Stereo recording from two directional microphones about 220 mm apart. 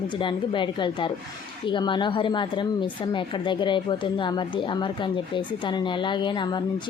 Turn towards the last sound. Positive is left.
turn(degrees=20)  # may be behind; listen again after turning